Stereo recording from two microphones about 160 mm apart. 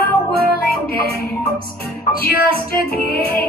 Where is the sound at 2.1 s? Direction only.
70° left (ahead or behind).